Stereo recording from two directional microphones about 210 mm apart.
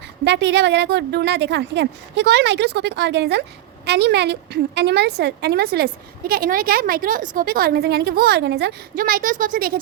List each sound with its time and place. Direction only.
0.3 s a woman's voice: 55° right (ahead or behind)